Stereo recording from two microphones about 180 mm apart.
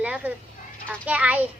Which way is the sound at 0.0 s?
10° right (ahead or behind).